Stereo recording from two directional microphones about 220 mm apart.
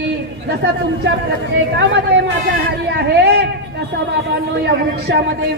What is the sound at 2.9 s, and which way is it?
Speech, 50° right (ahead or behind).